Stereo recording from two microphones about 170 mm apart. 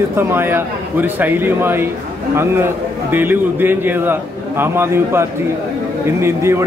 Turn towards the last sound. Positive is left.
turn(degrees=-15)  # may be behind; listen again after turning